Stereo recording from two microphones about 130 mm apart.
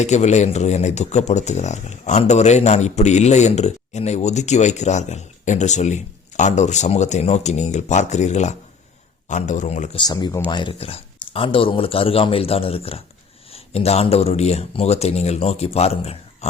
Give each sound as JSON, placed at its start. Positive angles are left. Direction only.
{"t": 0.0, "sound": "speech", "side_deg": 60}
{"t": 9.9, "sound": "speech", "side_deg": 35}